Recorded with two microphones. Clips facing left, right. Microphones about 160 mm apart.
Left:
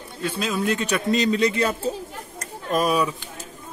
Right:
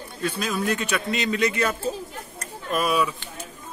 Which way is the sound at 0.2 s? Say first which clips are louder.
Left 1 dB; 25° left (ahead or behind).